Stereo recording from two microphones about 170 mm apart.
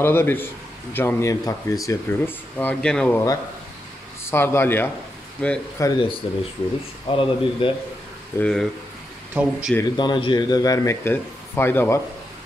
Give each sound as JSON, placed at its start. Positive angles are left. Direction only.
{"t": 0.0, "sound": "speech", "side_deg": 15}
{"t": 4.3, "sound": "speech", "side_deg": 15}
{"t": 5.8, "sound": "speech", "side_deg": 15}
{"t": 6.2, "sound": "speech", "side_deg": 30}
{"t": 8.4, "sound": "speech", "side_deg": 5}
{"t": 9.8, "sound": "speech", "side_deg": 25}